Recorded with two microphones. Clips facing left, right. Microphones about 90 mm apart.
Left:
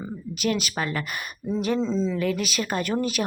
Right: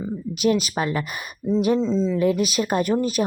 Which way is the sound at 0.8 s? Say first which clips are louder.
Right 4 dB; 25° right (ahead or behind).